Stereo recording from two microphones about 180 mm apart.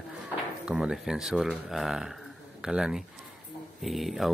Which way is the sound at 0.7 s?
5° right (ahead or behind).